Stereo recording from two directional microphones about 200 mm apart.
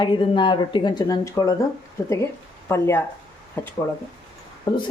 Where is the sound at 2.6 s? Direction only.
10° left (ahead or behind).